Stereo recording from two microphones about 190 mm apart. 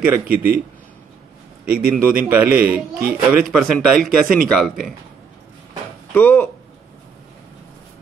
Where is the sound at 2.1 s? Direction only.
10° right (ahead or behind).